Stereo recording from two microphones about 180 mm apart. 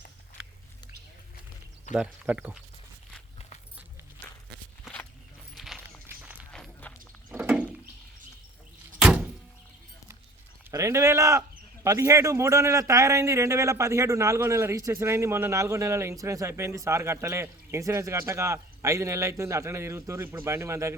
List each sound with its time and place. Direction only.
1.9 s speech: 5° right (ahead or behind)
4.9 s a sound: 5° right (ahead or behind)
6.1 s run: 10° right (ahead or behind)
6.5 s walk: 5° left (ahead or behind)
7.3 s a sound: 10° right (ahead or behind)
9.0 s door: 5° right (ahead or behind)
10.7 s speech: 15° right (ahead or behind)